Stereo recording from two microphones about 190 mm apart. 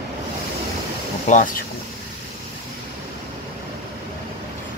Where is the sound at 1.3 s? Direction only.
45° left (ahead or behind).